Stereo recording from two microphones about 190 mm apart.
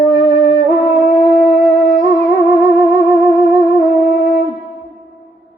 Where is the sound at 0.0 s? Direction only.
50° left (ahead or behind).